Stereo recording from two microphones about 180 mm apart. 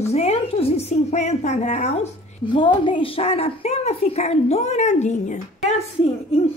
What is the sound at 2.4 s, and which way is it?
A woman's voice, 25° left (ahead or behind).